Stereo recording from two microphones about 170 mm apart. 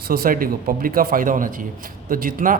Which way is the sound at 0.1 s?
60° right (ahead or behind).